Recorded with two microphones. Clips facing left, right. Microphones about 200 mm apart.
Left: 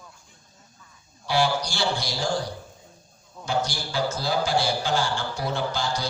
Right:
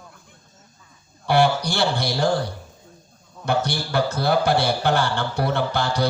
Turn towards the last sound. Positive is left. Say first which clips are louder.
# right 5 dB
turn(degrees=-60)  # may be behind; listen again after turning